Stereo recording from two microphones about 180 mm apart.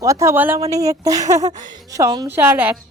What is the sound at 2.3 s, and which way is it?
Speech, 10° right (ahead or behind).